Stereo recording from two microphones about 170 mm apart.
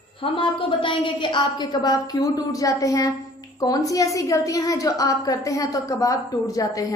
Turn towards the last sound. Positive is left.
turn(degrees=20)  # may be behind; listen again after turning